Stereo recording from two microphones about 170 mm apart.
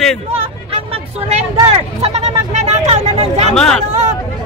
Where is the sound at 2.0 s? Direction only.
40° right (ahead or behind).